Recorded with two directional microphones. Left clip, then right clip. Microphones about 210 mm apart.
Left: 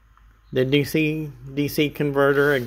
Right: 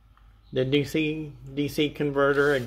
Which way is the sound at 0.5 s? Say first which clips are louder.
Left 4 dB; 35° left (ahead or behind).